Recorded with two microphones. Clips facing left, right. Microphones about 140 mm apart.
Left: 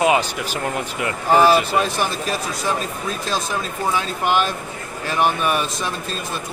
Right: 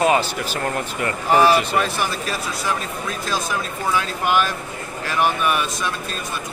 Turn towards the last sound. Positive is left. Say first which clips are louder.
# even
turn(degrees=30)  # may be behind; listen again after turning